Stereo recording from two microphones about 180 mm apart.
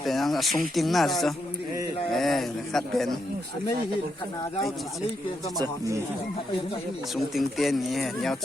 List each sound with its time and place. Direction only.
0.0 s speech: centre (ahead or behind)
5.5 s speech: 20° right (ahead or behind)
7.3 s speech: centre (ahead or behind)